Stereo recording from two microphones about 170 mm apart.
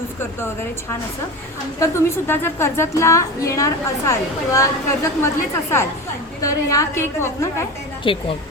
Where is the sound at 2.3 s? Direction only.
15° left (ahead or behind).